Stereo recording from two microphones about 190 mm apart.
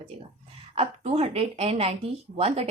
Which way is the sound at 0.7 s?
30° right (ahead or behind).